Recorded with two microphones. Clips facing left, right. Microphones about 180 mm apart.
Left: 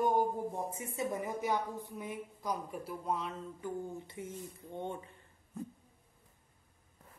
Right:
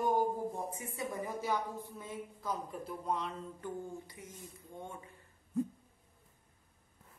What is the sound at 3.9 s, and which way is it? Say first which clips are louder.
Speech: left 5 dB; 25° left (ahead or behind).